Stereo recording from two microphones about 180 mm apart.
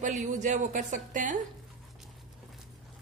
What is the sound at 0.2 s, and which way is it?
Speech, 40° right (ahead or behind).